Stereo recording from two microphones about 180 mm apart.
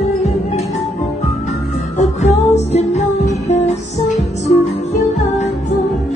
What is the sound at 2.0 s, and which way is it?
Music, 40° left (ahead or behind).